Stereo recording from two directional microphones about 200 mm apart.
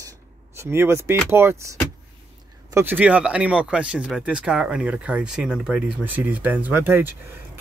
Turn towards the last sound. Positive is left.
turn(degrees=-10)  # may be behind; listen again after turning